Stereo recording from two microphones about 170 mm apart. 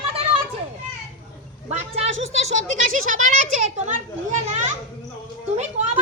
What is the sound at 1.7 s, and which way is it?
Speech, 40° right (ahead or behind).